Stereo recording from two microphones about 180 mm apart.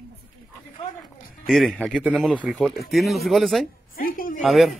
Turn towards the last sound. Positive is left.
turn(degrees=0)  # may be behind; listen again after turning